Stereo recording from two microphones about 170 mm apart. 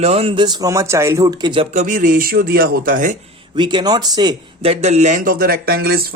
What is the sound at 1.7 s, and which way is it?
Speech, 50° right (ahead or behind).